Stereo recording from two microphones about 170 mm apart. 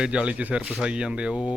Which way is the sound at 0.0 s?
5° right (ahead or behind).